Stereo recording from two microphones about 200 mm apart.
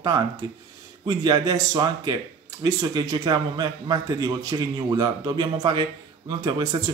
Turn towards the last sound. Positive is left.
turn(degrees=-20)  # may be behind; listen again after turning